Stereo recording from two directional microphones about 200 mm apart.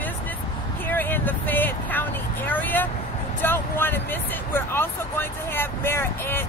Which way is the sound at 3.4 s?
10° left (ahead or behind).